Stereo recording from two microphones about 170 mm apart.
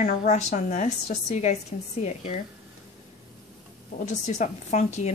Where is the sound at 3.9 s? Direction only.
45° left (ahead or behind).